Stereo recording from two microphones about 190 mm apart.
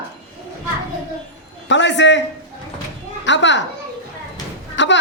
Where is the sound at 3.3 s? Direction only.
70° left (ahead or behind).